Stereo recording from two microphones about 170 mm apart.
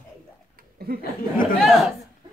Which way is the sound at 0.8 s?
65° right (ahead or behind).